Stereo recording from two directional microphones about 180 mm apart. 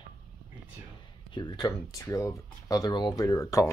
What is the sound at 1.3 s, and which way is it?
Speech, 25° left (ahead or behind).